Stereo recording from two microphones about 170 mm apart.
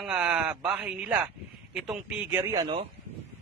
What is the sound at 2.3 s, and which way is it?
Speech, 15° right (ahead or behind).